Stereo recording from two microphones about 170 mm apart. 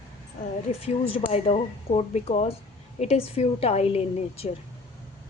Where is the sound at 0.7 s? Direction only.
35° left (ahead or behind).